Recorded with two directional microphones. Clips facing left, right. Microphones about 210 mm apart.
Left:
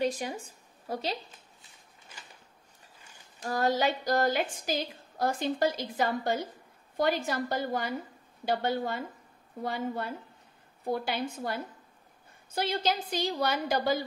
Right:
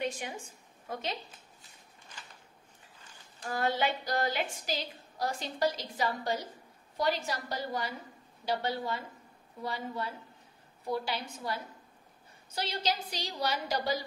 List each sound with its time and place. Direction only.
0.0 s a woman's voice: 35° left (ahead or behind)
3.4 s a woman's voice: 40° left (ahead or behind)